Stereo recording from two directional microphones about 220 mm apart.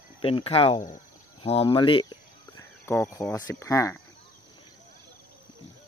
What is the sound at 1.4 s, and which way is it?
Cricket, 25° left (ahead or behind).